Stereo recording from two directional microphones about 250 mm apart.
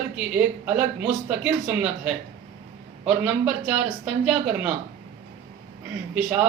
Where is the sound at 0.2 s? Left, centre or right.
Centre.